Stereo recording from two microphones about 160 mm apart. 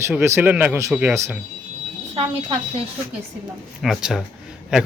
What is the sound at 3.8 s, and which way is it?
Speech, centre (ahead or behind).